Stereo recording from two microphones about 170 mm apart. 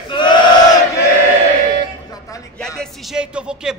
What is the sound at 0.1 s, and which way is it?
Battle cry, 25° left (ahead or behind).